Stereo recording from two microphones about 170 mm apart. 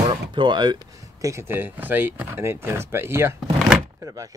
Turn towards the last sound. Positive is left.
turn(degrees=-20)  # may be behind; listen again after turning